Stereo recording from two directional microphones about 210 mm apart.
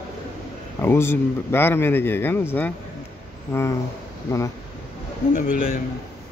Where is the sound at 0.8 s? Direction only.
10° left (ahead or behind).